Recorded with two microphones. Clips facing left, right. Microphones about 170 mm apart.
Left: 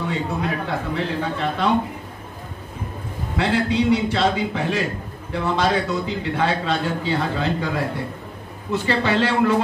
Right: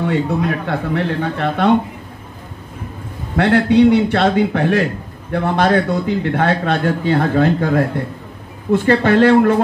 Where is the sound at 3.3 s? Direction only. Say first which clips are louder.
Right 8 dB; 60° right (ahead or behind).